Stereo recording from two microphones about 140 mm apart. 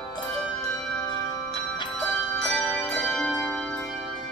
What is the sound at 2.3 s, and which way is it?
Music, 5° left (ahead or behind).